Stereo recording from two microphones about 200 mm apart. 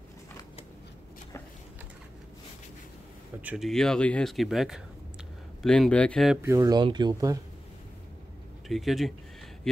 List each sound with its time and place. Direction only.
3.3 s speech: 5° right (ahead or behind)
6.4 s speech: 15° right (ahead or behind)
8.6 s speech: centre (ahead or behind)